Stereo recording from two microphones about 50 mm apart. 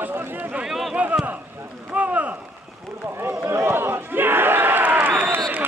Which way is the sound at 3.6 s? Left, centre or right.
Right.